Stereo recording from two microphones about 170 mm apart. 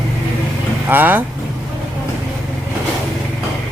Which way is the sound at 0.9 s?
10° right (ahead or behind).